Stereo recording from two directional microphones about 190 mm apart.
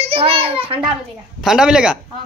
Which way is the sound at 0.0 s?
30° right (ahead or behind).